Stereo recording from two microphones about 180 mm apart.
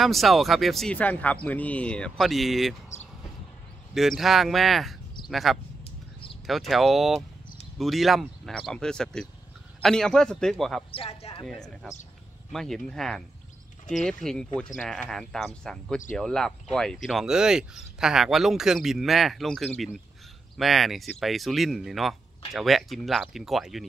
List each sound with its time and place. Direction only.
0.0 s speech: centre (ahead or behind)
3.9 s speech: centre (ahead or behind)
10.9 s speech: 30° left (ahead or behind)
11.4 s speech: centre (ahead or behind)